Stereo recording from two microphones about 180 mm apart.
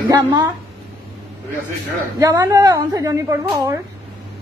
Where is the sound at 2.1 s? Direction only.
20° right (ahead or behind).